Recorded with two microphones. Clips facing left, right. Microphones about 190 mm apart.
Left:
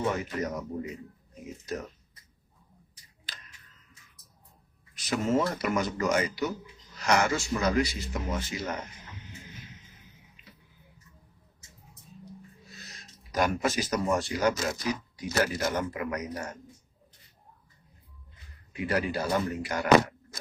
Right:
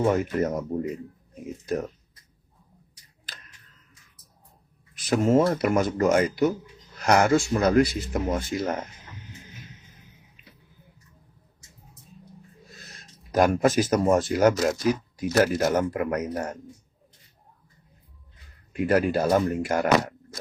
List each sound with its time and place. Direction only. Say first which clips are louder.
0.2 s speech: right 7 dB; 50° right (ahead or behind)
3.2 s a sound: right 2 dB; 50° right (ahead or behind)
4.9 s speech: right 6 dB; 50° right (ahead or behind)
12.7 s a sound: right 1 dB; 55° right (ahead or behind)
14.7 s speech: right 7 dB; 50° right (ahead or behind)
18.7 s speech: right 7 dB; 50° right (ahead or behind)